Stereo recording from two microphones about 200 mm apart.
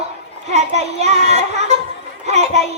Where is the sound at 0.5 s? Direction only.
35° right (ahead or behind).